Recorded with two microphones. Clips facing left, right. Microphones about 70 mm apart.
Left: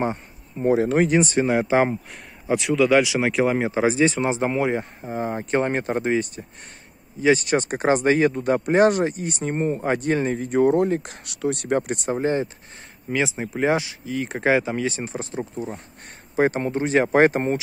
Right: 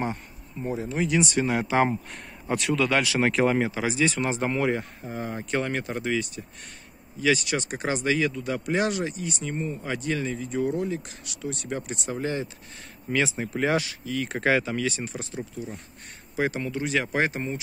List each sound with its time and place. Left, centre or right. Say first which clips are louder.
0.0 s a sound: left 5 dB; left
0.7 s speech: left 11 dB; left
1.0 s speech: left 5 dB; left
2.4 s speech: left 5 dB; centre
3.6 s speech: left 6 dB; left
12.1 s speech: left 6 dB; left
13.1 s speech: left 2 dB; centre; by 17.6 s left